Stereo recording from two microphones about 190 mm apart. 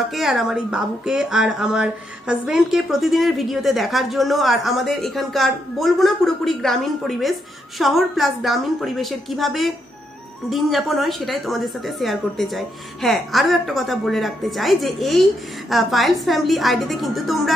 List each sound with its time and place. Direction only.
0.1 s speech: centre (ahead or behind)